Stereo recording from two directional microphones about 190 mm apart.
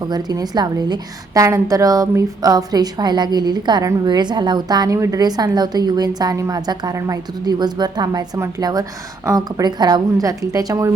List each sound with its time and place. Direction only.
0.1 s a woman's voice: 20° right (ahead or behind)